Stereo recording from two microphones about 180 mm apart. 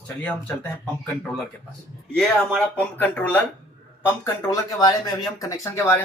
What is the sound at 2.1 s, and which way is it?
Speech, 5° left (ahead or behind).